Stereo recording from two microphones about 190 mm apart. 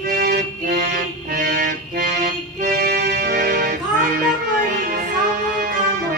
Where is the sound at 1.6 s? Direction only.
45° right (ahead or behind); by 3.7 s 60° right (ahead or behind).